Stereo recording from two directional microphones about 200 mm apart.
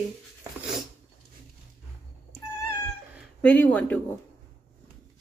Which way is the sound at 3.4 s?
5° left (ahead or behind).